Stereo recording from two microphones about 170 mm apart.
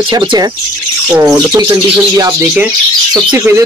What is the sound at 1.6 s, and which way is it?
Speech, 25° right (ahead or behind).